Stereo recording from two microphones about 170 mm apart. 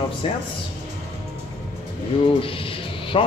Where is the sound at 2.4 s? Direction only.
30° left (ahead or behind).